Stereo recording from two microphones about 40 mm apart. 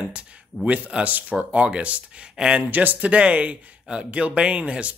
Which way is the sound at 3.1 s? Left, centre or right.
Right.